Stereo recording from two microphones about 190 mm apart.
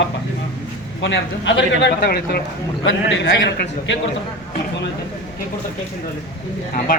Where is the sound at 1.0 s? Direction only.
70° left (ahead or behind); by 2.4 s 55° left (ahead or behind).